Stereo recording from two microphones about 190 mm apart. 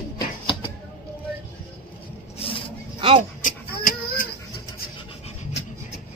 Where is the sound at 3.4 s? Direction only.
45° left (ahead or behind).